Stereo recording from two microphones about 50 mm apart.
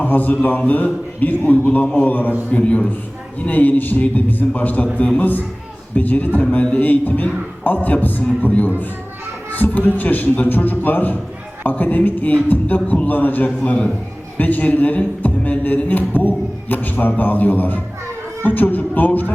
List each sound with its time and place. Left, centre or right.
0.0 s a man's voice: left
2.5 s a man's voice: left
13.7 s a man's voice: left
14.3 s a man's voice: left